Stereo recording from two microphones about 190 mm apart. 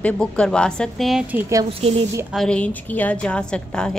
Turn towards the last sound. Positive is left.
turn(degrees=5)  # may be behind; listen again after turning